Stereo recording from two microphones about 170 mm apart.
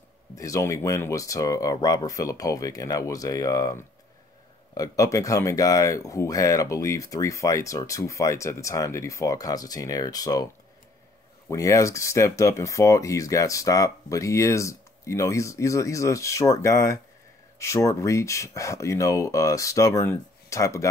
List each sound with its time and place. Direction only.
0.4 s speech: 20° left (ahead or behind)